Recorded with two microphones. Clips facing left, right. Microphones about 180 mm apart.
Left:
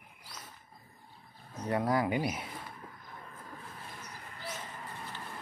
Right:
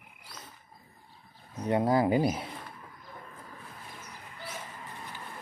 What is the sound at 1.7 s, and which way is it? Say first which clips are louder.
Speech: right 5 dB; 25° right (ahead or behind).